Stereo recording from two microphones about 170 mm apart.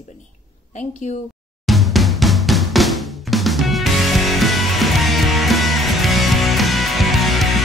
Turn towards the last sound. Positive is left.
turn(degrees=0)  # may be behind; listen again after turning